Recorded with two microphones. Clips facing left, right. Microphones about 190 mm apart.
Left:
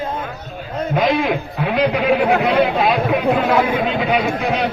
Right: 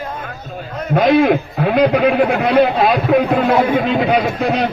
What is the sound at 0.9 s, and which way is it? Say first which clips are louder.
A man's voice: right 6 dB; 50° right (ahead or behind).